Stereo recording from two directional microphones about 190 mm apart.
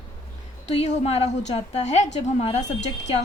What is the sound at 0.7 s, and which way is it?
A woman's voice, 35° left (ahead or behind).